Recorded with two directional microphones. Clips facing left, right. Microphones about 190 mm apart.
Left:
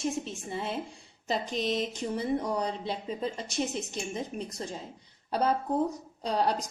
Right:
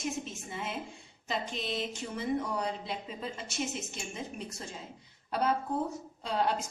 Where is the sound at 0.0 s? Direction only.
35° left (ahead or behind).